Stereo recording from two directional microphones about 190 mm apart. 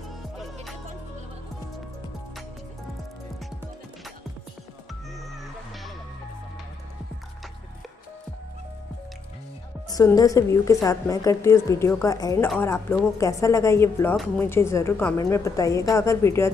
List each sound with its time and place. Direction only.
9.8 s a woman's voice: 20° left (ahead or behind)